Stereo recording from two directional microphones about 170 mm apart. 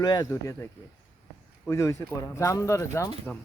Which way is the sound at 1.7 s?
15° left (ahead or behind).